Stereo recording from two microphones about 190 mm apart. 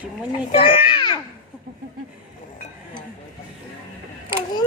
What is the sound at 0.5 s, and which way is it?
Speech, 30° left (ahead or behind).